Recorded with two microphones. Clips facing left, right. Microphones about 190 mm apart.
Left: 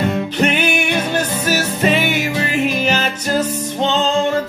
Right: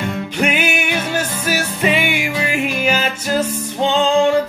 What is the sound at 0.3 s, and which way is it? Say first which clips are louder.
Music: left 2 dB; 10° right (ahead or behind).